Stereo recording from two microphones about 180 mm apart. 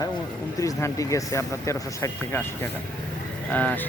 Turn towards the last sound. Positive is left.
turn(degrees=10)  # may be behind; listen again after turning